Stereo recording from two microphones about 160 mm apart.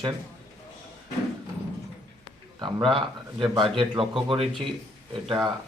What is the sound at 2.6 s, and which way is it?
Speech, 30° right (ahead or behind).